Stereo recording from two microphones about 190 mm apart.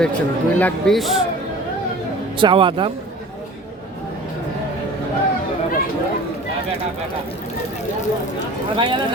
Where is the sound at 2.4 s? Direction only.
25° right (ahead or behind).